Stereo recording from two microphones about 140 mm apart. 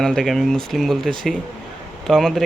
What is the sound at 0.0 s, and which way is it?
A man's voice, 5° left (ahead or behind).